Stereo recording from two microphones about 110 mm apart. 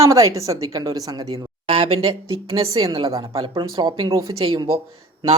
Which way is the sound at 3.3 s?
50° right (ahead or behind).